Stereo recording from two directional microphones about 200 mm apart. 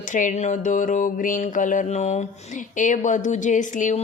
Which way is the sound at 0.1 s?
40° left (ahead or behind).